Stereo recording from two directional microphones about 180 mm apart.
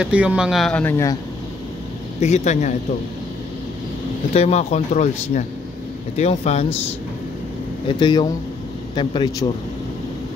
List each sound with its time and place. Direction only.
0.0 s speech: 5° right (ahead or behind); by 1.1 s 15° left (ahead or behind)
2.1 s speech: 40° left (ahead or behind)
4.3 s speech: 35° left (ahead or behind)
8.0 s speech: 25° left (ahead or behind)